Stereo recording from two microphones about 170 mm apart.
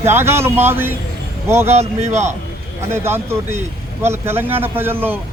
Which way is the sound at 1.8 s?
40° right (ahead or behind).